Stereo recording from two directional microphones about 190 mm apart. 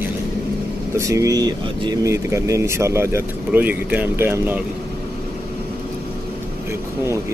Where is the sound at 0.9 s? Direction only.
15° right (ahead or behind).